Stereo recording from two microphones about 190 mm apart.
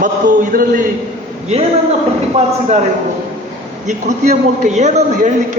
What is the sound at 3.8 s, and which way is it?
A man's voice, 40° right (ahead or behind).